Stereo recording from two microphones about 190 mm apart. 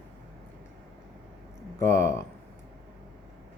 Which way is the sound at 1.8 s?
15° left (ahead or behind).